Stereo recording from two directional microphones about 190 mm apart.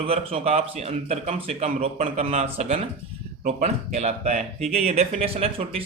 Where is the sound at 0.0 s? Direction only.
30° right (ahead or behind).